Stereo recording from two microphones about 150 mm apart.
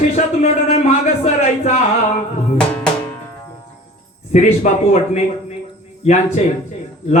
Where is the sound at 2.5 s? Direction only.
5° left (ahead or behind).